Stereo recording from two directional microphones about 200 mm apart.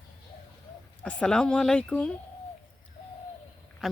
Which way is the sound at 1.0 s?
5° left (ahead or behind).